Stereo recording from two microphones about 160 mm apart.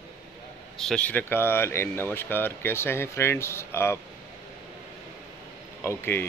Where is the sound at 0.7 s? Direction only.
5° left (ahead or behind).